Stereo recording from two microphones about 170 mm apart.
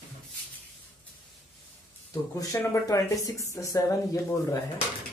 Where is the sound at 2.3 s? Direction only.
20° left (ahead or behind).